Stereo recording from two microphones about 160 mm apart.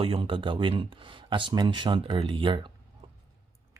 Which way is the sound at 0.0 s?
35° right (ahead or behind).